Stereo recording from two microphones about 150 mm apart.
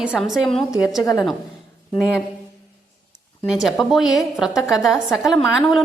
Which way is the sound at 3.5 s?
Centre (ahead or behind).